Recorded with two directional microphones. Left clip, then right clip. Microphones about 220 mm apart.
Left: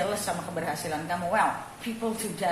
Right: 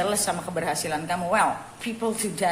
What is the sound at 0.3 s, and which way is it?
A woman's voice, 50° right (ahead or behind).